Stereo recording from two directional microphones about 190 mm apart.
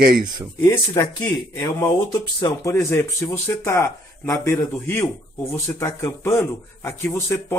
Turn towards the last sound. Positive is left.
turn(degrees=10)  # may be behind; listen again after turning